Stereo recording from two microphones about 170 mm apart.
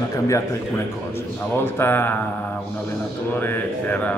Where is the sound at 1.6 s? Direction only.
15° left (ahead or behind).